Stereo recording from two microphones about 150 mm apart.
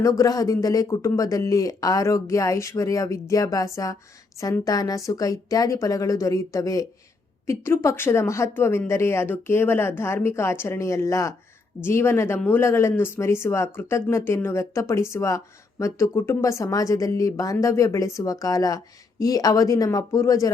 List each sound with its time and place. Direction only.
0.0 s speech: 25° left (ahead or behind)